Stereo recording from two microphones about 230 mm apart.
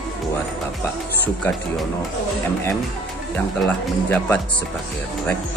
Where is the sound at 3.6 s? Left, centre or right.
Centre.